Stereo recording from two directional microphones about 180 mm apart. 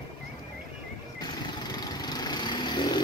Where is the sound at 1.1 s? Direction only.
20° left (ahead or behind).